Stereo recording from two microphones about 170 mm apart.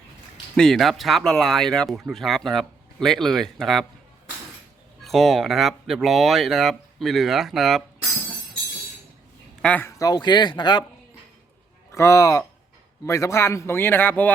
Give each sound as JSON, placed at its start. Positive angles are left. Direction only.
{"t": 0.5, "sound": "speech", "side_deg": 5}
{"t": 5.0, "sound": "speech", "side_deg": 0}
{"t": 9.6, "sound": "a man's voice", "side_deg": 10}
{"t": 10.0, "sound": "speech", "side_deg": 25}
{"t": 11.9, "sound": "a man's voice", "side_deg": 15}